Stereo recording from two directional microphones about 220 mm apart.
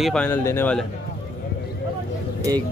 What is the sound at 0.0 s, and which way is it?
Speech, 5° left (ahead or behind).